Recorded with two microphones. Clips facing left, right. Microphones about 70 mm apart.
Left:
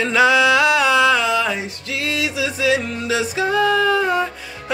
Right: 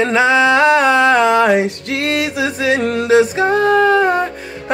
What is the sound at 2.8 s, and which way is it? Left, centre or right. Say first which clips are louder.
Music: right 9 dB; right.